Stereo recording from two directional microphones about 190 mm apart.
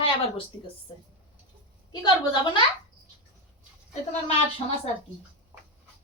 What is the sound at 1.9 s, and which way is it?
Speech, 20° left (ahead or behind).